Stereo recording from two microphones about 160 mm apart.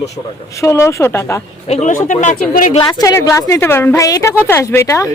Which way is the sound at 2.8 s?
25° left (ahead or behind).